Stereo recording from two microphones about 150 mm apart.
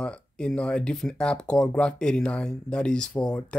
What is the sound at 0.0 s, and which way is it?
Speech, 5° left (ahead or behind).